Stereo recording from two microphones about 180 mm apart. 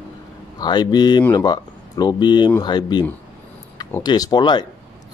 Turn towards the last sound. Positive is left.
turn(degrees=25)  # may be behind; listen again after turning